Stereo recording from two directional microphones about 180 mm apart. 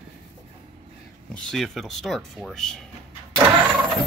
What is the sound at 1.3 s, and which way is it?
Speech, centre (ahead or behind).